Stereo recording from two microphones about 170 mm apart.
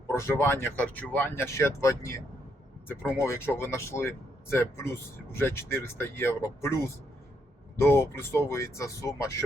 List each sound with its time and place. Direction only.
0.1 s speech: 15° left (ahead or behind)
3.2 s speech: 15° left (ahead or behind)
7.8 s speech: 15° left (ahead or behind)